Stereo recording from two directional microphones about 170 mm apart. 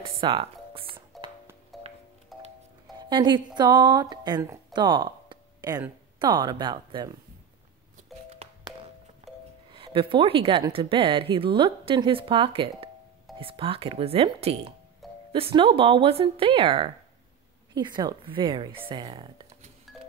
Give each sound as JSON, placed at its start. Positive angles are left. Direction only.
{"t": 0.2, "sound": "music", "side_deg": -30}
{"t": 1.1, "sound": "music", "side_deg": 0}
{"t": 3.0, "sound": "a woman's voice", "side_deg": -25}
{"t": 4.7, "sound": "a sound", "side_deg": -25}
{"t": 6.1, "sound": "speech", "side_deg": -25}
{"t": 8.3, "sound": "music", "side_deg": -40}
{"t": 9.7, "sound": "a woman's voice", "side_deg": -30}
{"t": 15.0, "sound": "music", "side_deg": 0}
{"t": 15.3, "sound": "a woman's voice", "side_deg": -35}